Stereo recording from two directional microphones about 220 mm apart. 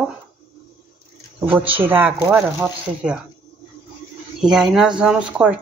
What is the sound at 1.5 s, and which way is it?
A woman's voice, 10° right (ahead or behind).